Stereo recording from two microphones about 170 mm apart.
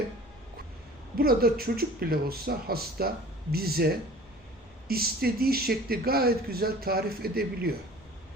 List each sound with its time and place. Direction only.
1.2 s speech: 60° right (ahead or behind)
4.9 s speech: 65° right (ahead or behind)